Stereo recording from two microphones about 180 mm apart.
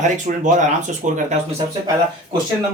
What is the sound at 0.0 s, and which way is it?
Speech, 45° right (ahead or behind).